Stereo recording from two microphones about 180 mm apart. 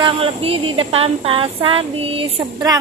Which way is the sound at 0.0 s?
30° right (ahead or behind).